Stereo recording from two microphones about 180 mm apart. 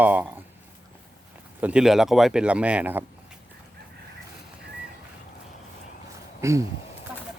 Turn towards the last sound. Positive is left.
turn(degrees=-15)  # may be behind; listen again after turning